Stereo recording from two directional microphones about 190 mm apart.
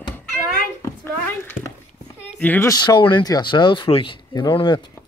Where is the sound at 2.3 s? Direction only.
10° left (ahead or behind).